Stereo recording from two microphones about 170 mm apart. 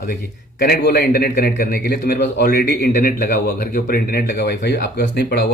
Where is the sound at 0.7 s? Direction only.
65° left (ahead or behind).